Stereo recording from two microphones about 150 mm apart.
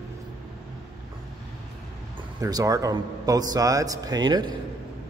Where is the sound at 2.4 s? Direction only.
25° right (ahead or behind).